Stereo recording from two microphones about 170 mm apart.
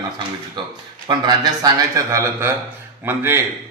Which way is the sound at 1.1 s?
25° right (ahead or behind).